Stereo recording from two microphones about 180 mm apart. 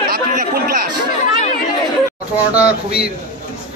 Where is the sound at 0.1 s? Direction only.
55° right (ahead or behind).